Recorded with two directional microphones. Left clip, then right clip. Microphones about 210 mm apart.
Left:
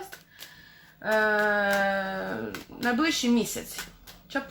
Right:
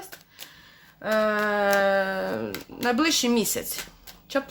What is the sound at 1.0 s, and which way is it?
Speech, 50° right (ahead or behind).